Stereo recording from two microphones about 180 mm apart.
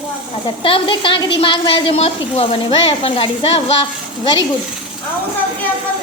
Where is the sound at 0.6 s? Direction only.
30° left (ahead or behind).